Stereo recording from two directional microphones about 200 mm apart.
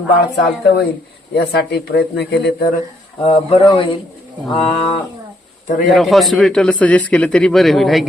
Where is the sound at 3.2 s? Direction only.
30° left (ahead or behind).